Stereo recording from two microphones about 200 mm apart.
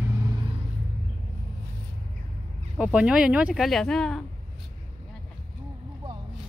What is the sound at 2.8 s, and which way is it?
Speech, 5° right (ahead or behind).